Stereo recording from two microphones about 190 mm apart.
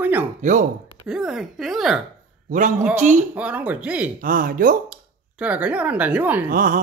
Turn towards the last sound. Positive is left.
turn(degrees=-45)  # may be behind; listen again after turning